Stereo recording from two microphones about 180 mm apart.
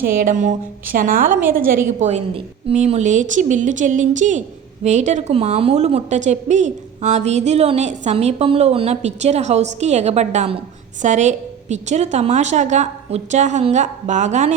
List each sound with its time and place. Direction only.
0.0 s a woman's voice: 50° right (ahead or behind)
2.0 s a woman's voice: 40° right (ahead or behind)